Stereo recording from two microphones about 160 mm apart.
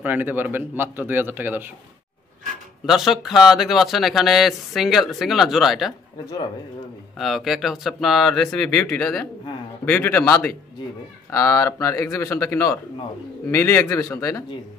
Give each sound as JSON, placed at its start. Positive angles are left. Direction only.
{"t": 0.0, "sound": "speech", "side_deg": -10}
{"t": 2.9, "sound": "speech", "side_deg": 0}
{"t": 7.2, "sound": "a man's voice", "side_deg": 0}